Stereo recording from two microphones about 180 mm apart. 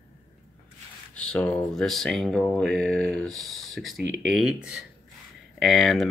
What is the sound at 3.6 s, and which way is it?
Speech, centre (ahead or behind).